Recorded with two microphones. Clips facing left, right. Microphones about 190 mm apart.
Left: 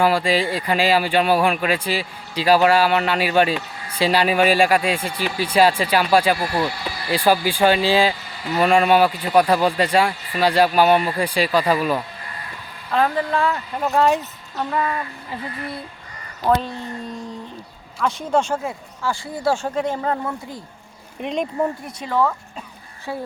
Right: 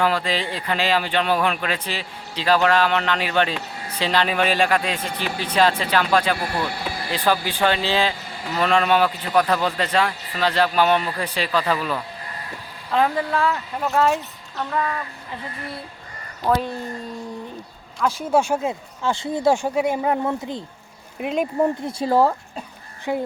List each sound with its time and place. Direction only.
0.0 s speech: 10° left (ahead or behind)
6.7 s a sound: 55° right (ahead or behind)
7.1 s speech: 10° left (ahead or behind)
12.9 s speech: 15° right (ahead or behind)
13.3 s speech: centre (ahead or behind)
14.5 s speech: 10° left (ahead or behind)
18.0 s speech: 5° right (ahead or behind)
21.2 s speech: 5° right (ahead or behind)
21.6 s speech: 25° right (ahead or behind)
23.1 s speech: 15° right (ahead or behind)